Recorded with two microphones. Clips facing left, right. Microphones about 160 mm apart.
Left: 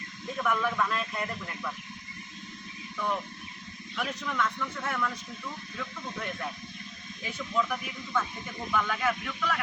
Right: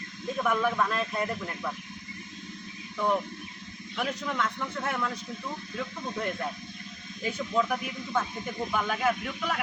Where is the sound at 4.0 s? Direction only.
25° right (ahead or behind).